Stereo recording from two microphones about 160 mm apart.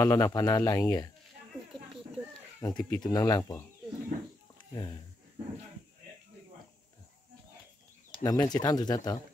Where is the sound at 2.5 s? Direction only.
20° left (ahead or behind).